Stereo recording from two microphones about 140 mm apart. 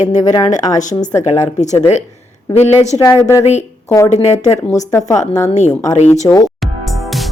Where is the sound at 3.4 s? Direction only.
55° left (ahead or behind).